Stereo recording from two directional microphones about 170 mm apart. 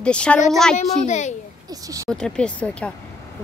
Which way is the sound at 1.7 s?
20° right (ahead or behind).